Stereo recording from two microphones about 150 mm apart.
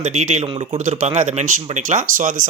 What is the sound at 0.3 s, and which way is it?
Speech, 45° right (ahead or behind).